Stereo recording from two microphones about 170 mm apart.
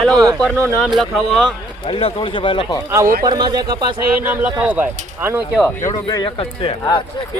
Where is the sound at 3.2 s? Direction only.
25° right (ahead or behind).